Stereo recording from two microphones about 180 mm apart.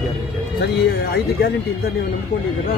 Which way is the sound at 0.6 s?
65° left (ahead or behind).